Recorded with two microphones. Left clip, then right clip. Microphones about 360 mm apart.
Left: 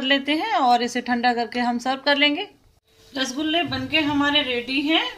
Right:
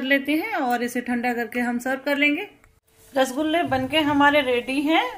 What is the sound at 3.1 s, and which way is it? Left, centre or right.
A woman's voice, centre.